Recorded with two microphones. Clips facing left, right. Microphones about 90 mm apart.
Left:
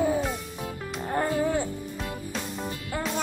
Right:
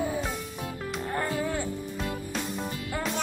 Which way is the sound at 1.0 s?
20° left (ahead or behind).